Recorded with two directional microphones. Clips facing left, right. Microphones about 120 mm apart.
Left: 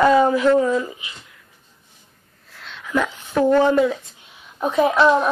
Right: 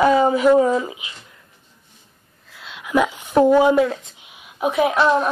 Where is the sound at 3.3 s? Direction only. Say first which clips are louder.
Right 2 dB; 15° right (ahead or behind).